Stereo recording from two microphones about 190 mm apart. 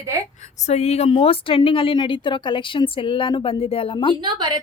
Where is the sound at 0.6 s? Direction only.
35° left (ahead or behind).